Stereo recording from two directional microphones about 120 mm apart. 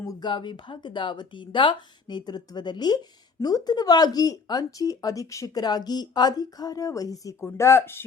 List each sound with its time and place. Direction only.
0.0 s speech: 35° left (ahead or behind)